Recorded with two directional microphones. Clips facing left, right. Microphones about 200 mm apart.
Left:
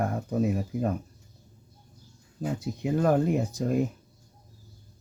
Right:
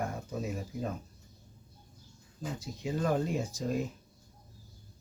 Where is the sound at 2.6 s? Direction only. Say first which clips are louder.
Left 7 dB; 60° left (ahead or behind).